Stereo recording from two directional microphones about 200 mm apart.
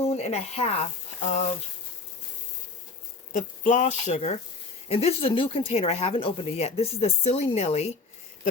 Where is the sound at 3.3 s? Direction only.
40° left (ahead or behind).